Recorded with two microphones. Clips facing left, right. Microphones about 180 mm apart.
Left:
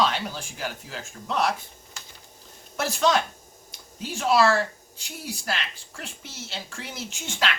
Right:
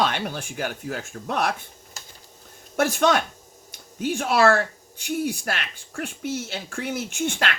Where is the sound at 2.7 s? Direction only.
55° right (ahead or behind).